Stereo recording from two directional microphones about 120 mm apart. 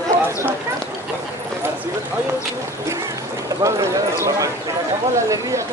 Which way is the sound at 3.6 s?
25° right (ahead or behind).